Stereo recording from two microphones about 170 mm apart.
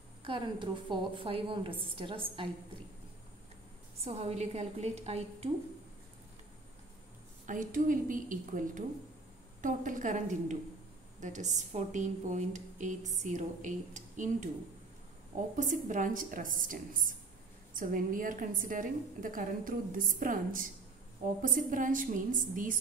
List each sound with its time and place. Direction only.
0.2 s a woman's voice: 30° right (ahead or behind)
4.0 s a woman's voice: 40° right (ahead or behind)
7.4 s speech: 50° right (ahead or behind)
15.5 s speech: 50° right (ahead or behind)